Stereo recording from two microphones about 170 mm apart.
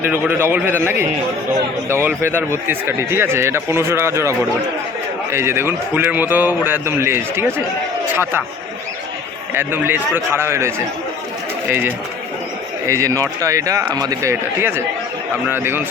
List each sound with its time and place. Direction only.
0.0 s speech: 10° right (ahead or behind)
9.6 s speech: 10° right (ahead or behind)